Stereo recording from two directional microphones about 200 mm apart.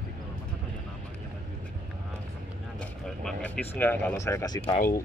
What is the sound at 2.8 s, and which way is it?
Speech, 5° left (ahead or behind).